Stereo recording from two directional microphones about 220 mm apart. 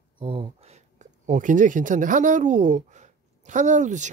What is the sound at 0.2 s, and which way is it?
Speech, 25° right (ahead or behind).